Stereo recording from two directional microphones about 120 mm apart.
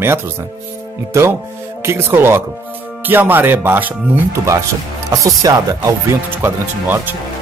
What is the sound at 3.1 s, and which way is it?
Music, 15° right (ahead or behind).